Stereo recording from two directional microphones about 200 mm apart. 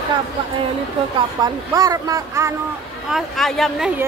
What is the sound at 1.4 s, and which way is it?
Speech, 15° right (ahead or behind).